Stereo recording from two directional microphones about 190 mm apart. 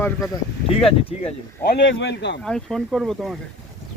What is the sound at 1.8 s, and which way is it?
Speech, 70° left (ahead or behind).